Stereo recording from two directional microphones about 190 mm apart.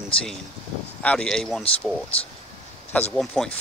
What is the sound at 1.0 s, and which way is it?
Speech, 5° left (ahead or behind).